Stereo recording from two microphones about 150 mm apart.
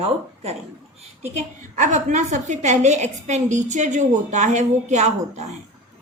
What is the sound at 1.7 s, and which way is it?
Speech, 55° right (ahead or behind).